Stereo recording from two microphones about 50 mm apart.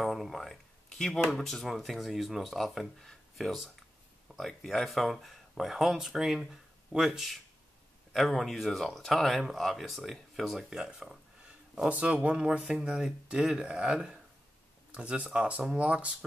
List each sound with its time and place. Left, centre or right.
0.0 s speech: centre
11.9 s speech: right